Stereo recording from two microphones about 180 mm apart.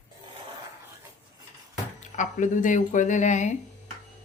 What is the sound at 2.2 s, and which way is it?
Speech, 45° left (ahead or behind).